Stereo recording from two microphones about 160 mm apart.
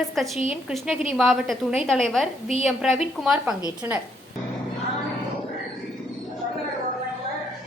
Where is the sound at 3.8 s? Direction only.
15° right (ahead or behind).